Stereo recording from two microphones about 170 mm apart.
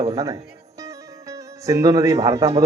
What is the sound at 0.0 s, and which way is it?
Speech, 20° right (ahead or behind).